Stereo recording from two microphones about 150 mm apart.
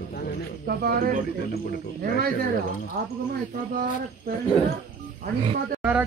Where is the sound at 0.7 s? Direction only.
85° right.